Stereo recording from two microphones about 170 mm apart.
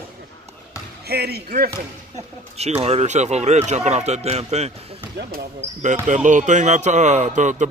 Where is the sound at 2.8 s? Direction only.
40° right (ahead or behind).